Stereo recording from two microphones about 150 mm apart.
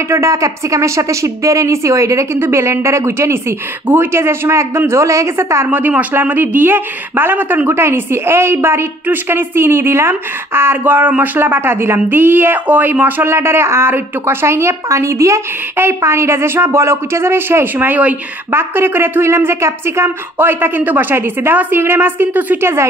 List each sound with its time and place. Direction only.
0.1 s speech: 20° right (ahead or behind)